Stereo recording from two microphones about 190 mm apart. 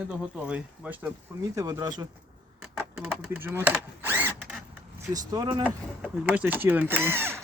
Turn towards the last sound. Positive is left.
turn(degrees=-10)  # may be behind; listen again after turning